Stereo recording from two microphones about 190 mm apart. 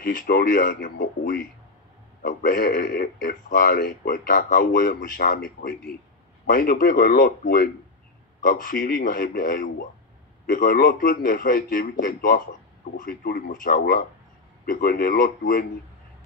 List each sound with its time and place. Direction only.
0.0 s a man's voice: 50° left (ahead or behind)